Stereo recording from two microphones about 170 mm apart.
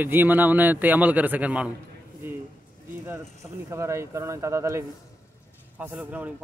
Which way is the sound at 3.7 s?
15° right (ahead or behind).